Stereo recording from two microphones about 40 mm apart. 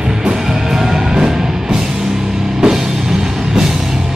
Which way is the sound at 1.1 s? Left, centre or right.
Centre.